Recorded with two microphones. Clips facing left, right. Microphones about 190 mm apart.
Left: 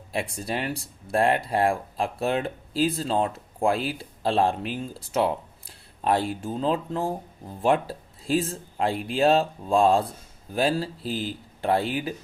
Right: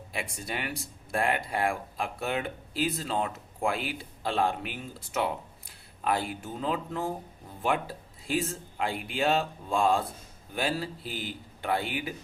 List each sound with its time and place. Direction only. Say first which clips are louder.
0.1 s speech: left 7 dB; 35° left (ahead or behind)